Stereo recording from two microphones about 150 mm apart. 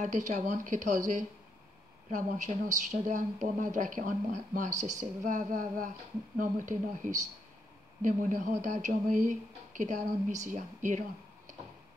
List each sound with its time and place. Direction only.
0.0 s speech: 55° right (ahead or behind)